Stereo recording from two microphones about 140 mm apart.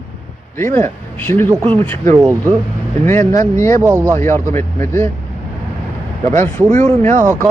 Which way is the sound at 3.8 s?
20° right (ahead or behind).